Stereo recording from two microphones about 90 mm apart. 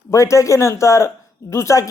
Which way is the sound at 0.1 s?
35° left (ahead or behind).